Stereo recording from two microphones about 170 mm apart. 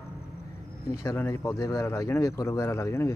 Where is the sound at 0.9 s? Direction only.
20° left (ahead or behind).